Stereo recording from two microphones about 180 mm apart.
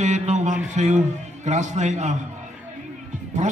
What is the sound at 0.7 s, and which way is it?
A man's voice, 40° right (ahead or behind).